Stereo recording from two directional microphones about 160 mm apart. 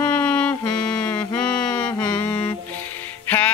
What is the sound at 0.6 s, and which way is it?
Music, 25° left (ahead or behind).